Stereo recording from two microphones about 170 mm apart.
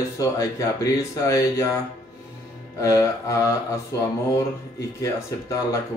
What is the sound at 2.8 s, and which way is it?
Speech, 20° left (ahead or behind).